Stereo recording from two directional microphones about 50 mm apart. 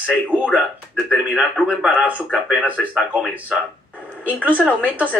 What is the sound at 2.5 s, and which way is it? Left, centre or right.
Speech, right.